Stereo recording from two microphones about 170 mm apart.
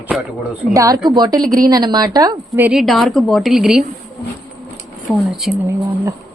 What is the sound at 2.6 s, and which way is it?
A woman's voice, centre (ahead or behind).